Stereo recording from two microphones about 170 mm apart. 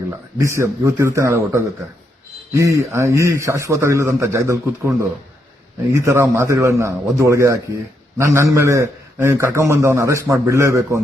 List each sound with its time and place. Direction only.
0.3 s a man's voice: 15° right (ahead or behind)